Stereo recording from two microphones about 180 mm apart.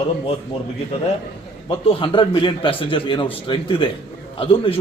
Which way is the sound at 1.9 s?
30° left (ahead or behind).